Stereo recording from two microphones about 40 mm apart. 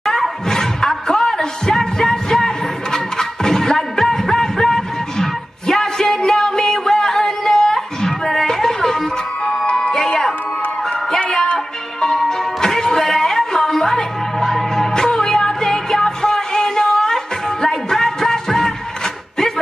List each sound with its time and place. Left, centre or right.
0.1 s music: centre
10.0 s music: left
12.3 s music: centre